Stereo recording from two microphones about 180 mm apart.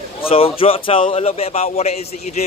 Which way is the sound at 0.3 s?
30° left (ahead or behind).